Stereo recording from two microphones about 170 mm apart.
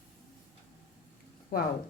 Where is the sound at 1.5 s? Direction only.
60° left (ahead or behind).